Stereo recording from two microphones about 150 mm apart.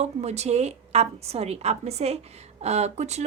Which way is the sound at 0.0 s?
45° right (ahead or behind).